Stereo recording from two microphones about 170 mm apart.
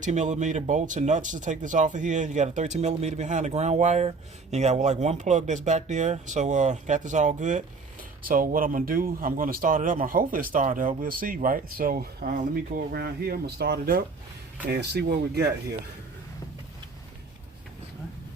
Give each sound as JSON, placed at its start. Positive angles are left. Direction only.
{"t": 0.0, "sound": "speech", "side_deg": -45}